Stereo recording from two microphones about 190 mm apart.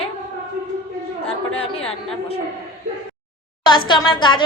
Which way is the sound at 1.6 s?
30° left (ahead or behind).